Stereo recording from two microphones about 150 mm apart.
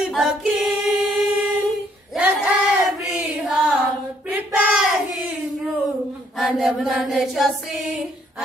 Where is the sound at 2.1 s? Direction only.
10° right (ahead or behind).